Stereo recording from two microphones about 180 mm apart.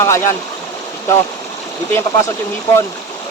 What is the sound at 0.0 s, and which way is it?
Speech, 15° left (ahead or behind).